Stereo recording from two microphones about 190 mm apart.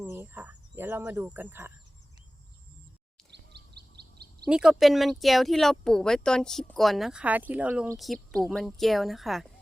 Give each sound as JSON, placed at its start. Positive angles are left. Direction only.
{"t": 0.0, "sound": "speech", "side_deg": -10}
{"t": 3.3, "sound": "a sound", "side_deg": -60}
{"t": 4.4, "sound": "speech", "side_deg": -5}